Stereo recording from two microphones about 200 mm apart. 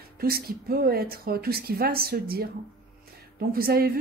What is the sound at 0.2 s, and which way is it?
A woman's voice, 50° right (ahead or behind).